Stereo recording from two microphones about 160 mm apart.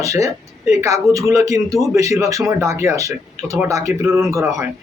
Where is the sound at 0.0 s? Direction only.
20° right (ahead or behind).